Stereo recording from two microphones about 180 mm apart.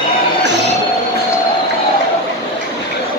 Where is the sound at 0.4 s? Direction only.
75° right (ahead or behind).